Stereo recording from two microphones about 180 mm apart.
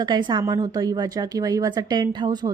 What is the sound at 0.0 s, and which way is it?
A woman's voice, 25° right (ahead or behind).